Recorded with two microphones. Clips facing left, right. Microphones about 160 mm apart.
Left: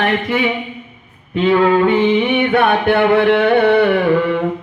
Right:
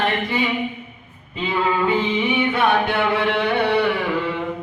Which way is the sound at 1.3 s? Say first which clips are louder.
Left 9 dB; 70° left (ahead or behind).